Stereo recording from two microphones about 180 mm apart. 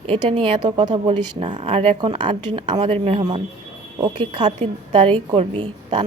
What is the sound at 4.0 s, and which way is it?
A woman's voice, 25° right (ahead or behind).